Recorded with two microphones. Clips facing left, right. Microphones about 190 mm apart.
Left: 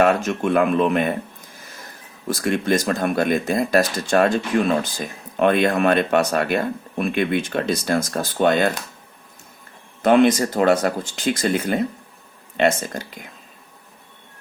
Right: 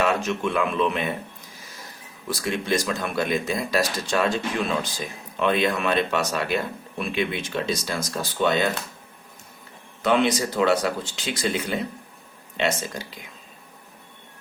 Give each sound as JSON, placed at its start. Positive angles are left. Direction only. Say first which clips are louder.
{"t": 0.0, "sound": "speech", "louder": "left 5 dB", "side_deg": 50}
{"t": 2.2, "sound": "speech", "louder": "left 6 dB", "side_deg": 50}
{"t": 10.0, "sound": "speech", "louder": "left 6 dB", "side_deg": 50}